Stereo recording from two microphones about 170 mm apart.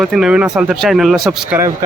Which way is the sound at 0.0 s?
Centre (ahead or behind).